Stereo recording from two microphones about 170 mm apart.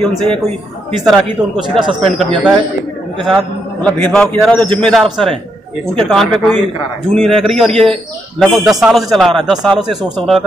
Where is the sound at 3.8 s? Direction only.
5° left (ahead or behind).